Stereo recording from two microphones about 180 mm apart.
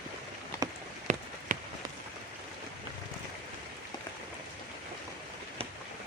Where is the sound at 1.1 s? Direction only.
45° right (ahead or behind).